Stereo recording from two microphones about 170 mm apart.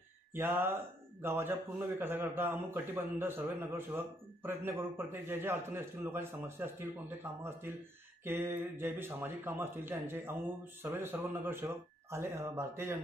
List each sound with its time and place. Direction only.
0.3 s a man's voice: 15° right (ahead or behind)